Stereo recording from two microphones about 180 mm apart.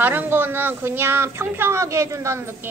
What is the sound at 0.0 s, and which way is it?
Speech, 10° right (ahead or behind).